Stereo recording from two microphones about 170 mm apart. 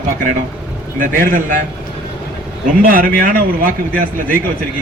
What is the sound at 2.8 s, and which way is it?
Speech, 55° right (ahead or behind).